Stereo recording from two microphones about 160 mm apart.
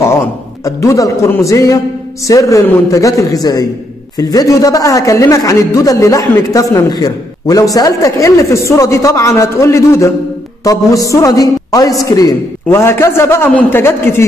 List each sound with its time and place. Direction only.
0.0 s a man's voice: 15° left (ahead or behind)